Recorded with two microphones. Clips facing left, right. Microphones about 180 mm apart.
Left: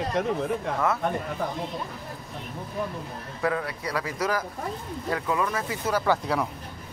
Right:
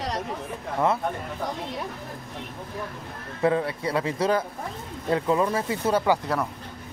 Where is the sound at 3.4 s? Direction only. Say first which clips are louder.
Right 5 dB; 25° right (ahead or behind).